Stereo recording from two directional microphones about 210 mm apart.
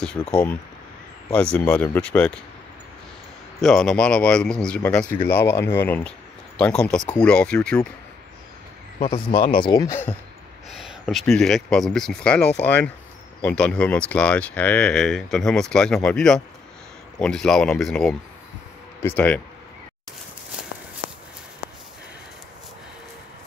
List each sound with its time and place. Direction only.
0.0 s speech: 5° left (ahead or behind)
3.6 s speech: 5° left (ahead or behind)
9.0 s speech: 25° left (ahead or behind)
10.7 s speech: centre (ahead or behind)